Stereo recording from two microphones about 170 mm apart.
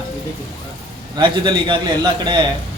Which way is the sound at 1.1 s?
30° right (ahead or behind).